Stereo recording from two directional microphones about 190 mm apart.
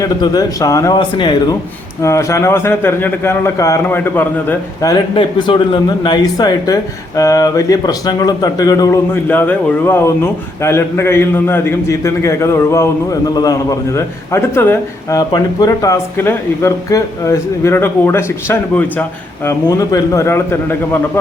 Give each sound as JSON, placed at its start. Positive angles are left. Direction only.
{"t": 0.0, "sound": "a man's voice", "side_deg": 20}